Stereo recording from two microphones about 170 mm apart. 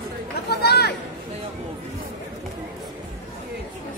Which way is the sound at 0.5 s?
70° left (ahead or behind).